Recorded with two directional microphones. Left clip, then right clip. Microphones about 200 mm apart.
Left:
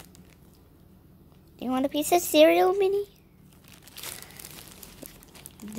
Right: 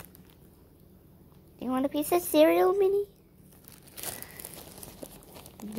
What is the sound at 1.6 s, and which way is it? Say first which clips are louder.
Speech: left 2 dB; 20° left (ahead or behind).